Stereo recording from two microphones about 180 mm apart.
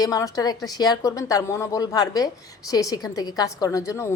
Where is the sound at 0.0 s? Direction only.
20° left (ahead or behind).